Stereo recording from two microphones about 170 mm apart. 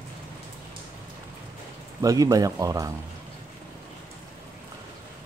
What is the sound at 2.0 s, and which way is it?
Speech, 20° right (ahead or behind).